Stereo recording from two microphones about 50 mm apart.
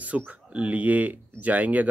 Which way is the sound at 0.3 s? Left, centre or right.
Right.